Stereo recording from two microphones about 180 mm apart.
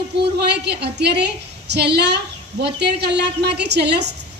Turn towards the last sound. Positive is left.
turn(degrees=-70)  # may be behind; listen again after turning